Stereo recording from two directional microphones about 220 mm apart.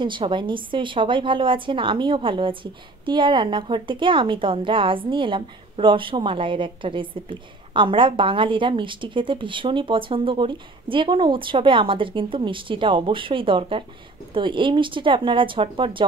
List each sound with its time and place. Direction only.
0.0 s a woman's voice: 20° right (ahead or behind)